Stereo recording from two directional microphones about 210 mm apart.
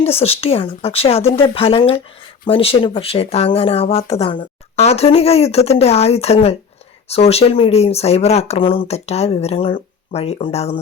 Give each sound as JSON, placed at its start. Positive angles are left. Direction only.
{"t": 0.0, "sound": "speech", "side_deg": 30}